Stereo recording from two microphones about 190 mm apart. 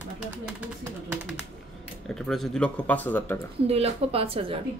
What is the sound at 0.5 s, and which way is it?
Speech, 5° right (ahead or behind).